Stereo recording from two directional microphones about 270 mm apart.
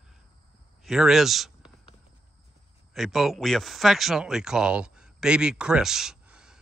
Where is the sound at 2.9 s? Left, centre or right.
Centre.